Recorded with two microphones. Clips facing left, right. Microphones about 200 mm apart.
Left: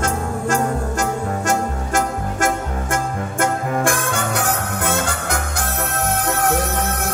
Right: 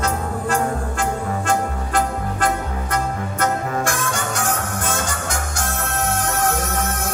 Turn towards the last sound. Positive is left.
turn(degrees=60)  # may be behind; listen again after turning